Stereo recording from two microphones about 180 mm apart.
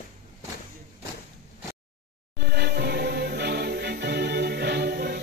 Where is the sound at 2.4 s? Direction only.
65° right (ahead or behind).